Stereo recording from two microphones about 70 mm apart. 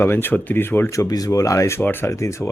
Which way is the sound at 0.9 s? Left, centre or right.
Left.